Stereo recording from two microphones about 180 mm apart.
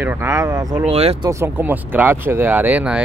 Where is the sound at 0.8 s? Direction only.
35° right (ahead or behind).